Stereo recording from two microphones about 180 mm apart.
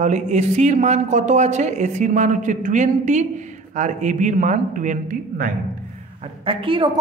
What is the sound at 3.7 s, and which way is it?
Speech, 40° right (ahead or behind).